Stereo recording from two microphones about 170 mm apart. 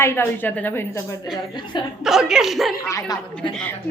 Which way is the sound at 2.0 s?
5° right (ahead or behind).